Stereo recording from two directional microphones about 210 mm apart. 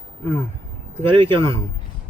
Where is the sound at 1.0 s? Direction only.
25° right (ahead or behind).